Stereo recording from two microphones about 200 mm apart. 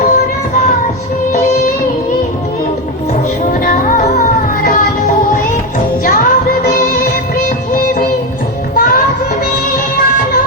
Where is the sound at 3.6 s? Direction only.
45° left (ahead or behind).